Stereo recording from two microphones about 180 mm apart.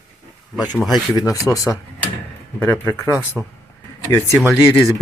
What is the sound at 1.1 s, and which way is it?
Speech, 20° left (ahead or behind).